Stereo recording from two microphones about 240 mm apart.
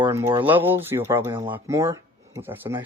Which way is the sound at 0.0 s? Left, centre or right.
Centre.